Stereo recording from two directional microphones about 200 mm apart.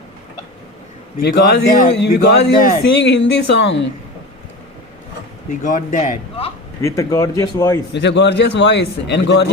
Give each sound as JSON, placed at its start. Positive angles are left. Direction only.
{"t": 1.2, "sound": "a man's voice", "side_deg": 55}
{"t": 5.5, "sound": "speech", "side_deg": 40}
{"t": 6.8, "sound": "speech", "side_deg": 15}
{"t": 7.9, "sound": "a man's voice", "side_deg": 60}